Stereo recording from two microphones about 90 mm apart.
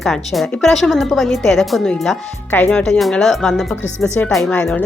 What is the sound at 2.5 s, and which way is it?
Speech, 20° left (ahead or behind).